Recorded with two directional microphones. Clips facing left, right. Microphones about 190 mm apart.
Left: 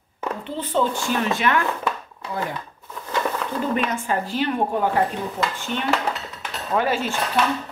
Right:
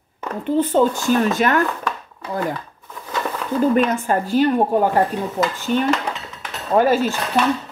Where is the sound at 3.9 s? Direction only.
45° right (ahead or behind).